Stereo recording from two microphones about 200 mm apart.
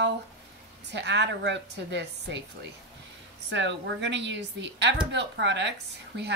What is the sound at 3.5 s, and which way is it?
Speech, 60° right (ahead or behind).